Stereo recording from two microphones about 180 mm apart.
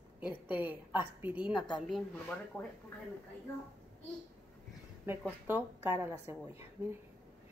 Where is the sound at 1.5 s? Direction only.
25° left (ahead or behind).